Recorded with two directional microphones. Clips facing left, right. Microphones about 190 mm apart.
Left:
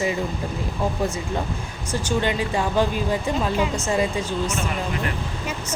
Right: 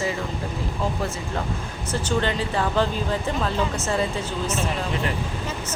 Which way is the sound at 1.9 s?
15° left (ahead or behind).